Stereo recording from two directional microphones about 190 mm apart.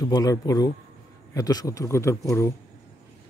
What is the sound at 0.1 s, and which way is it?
A man's voice, 20° left (ahead or behind).